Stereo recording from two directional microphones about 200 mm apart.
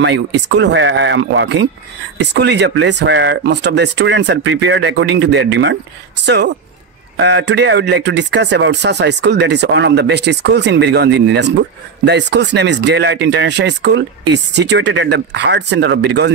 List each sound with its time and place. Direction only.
0.0 s speech: 60° right (ahead or behind)